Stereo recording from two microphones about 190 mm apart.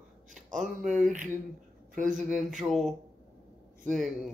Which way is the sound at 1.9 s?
40° right (ahead or behind).